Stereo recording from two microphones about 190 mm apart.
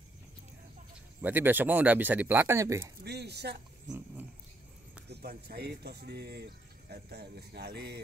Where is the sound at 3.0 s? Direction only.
60° right (ahead or behind).